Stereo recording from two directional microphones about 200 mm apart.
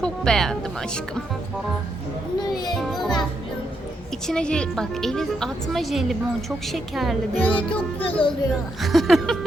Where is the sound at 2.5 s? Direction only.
20° left (ahead or behind).